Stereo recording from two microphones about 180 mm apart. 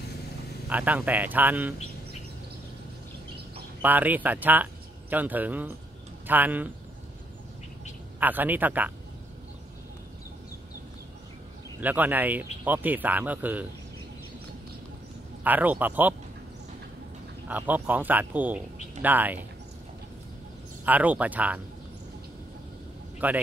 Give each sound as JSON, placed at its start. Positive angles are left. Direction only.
{"t": 0.7, "sound": "speech", "side_deg": -10}
{"t": 3.8, "sound": "speech", "side_deg": -10}
{"t": 8.2, "sound": "speech", "side_deg": -10}
{"t": 11.8, "sound": "speech", "side_deg": -10}
{"t": 15.4, "sound": "speech", "side_deg": -10}
{"t": 17.5, "sound": "speech", "side_deg": -10}
{"t": 20.8, "sound": "speech", "side_deg": -10}
{"t": 23.2, "sound": "speech", "side_deg": -10}